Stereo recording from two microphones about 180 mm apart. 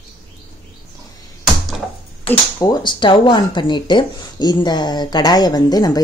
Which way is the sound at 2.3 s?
20° left (ahead or behind).